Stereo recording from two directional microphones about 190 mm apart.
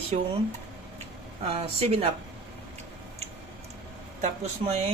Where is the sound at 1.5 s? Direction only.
30° right (ahead or behind).